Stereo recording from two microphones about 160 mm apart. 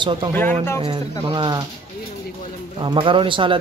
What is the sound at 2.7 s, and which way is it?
Speech, 30° right (ahead or behind).